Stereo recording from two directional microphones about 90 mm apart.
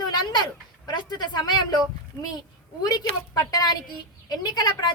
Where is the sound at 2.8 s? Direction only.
45° left (ahead or behind).